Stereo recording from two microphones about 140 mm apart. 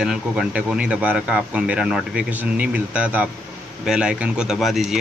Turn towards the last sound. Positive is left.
turn(degrees=0)  # may be behind; listen again after turning